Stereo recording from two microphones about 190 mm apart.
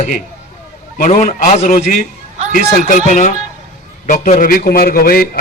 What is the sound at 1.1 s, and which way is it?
A man's voice, 35° left (ahead or behind).